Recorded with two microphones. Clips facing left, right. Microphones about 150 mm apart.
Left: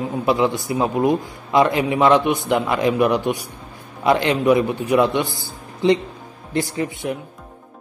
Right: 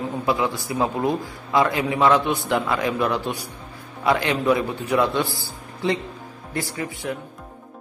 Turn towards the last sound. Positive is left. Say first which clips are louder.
# left 4 dB
turn(degrees=20)  # may be behind; listen again after turning